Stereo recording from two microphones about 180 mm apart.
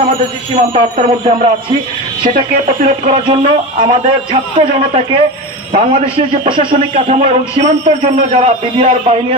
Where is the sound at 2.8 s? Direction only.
35° right (ahead or behind).